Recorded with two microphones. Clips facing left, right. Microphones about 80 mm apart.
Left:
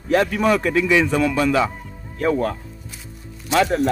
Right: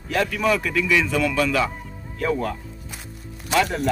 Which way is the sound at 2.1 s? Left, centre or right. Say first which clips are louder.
Left 4 dB; left.